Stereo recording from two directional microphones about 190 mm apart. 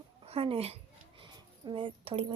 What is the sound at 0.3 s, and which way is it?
Speech, 30° right (ahead or behind).